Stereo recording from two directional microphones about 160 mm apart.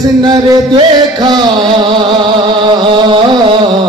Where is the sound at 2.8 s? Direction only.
35° right (ahead or behind).